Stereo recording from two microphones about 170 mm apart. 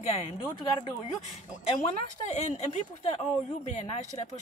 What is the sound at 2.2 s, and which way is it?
Speech, 45° left (ahead or behind).